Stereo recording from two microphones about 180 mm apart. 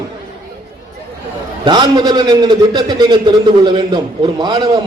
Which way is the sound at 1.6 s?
25° right (ahead or behind).